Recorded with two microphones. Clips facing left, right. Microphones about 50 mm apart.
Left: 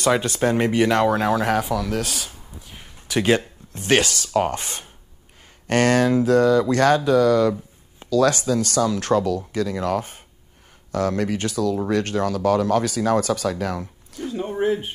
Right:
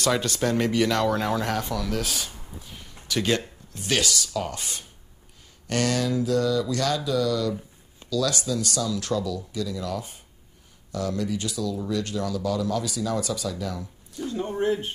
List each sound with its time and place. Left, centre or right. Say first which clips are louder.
0.0 s speech: left 4 dB; left
1.1 s speech: left 6 dB; centre
2.7 s a sound: left 5 dB; left
3.7 s speech: left 6 dB; left
14.2 s speech: left 3 dB; centre